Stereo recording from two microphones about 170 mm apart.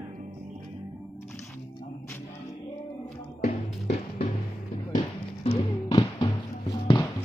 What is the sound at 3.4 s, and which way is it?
Music, 40° left (ahead or behind).